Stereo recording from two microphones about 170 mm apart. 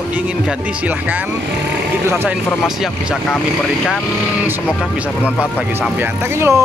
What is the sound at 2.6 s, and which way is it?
Speech, centre (ahead or behind).